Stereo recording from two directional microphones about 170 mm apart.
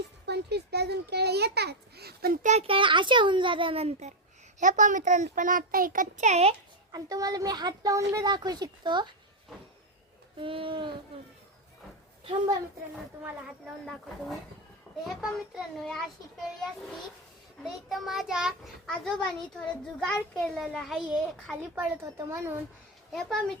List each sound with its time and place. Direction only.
0.3 s a child's voice: 75° right (ahead or behind); by 4.1 s 35° right (ahead or behind)
4.6 s a child's voice: 50° right (ahead or behind)
6.9 s a woman's voice: 20° right (ahead or behind)
10.4 s speech: 30° right (ahead or behind)
12.2 s a woman's voice: 30° right (ahead or behind)
15.0 s a child's voice: centre (ahead or behind)
17.8 s a child's voice: centre (ahead or behind)
22.0 s a child's voice: 15° right (ahead or behind)